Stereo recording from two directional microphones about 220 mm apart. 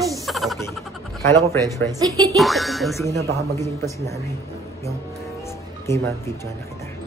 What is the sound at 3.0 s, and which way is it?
Speech, 15° left (ahead or behind).